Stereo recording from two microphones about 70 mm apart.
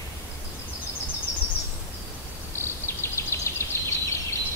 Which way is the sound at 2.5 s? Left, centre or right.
Left.